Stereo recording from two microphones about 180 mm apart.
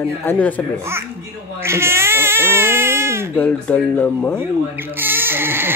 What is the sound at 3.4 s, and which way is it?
Speech, 10° left (ahead or behind).